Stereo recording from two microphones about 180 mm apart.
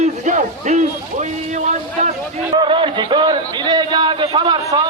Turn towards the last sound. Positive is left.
turn(degrees=-20)  # may be behind; listen again after turning